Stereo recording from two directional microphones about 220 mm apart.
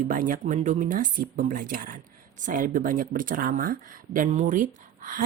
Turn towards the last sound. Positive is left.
turn(degrees=-40)  # may be behind; listen again after turning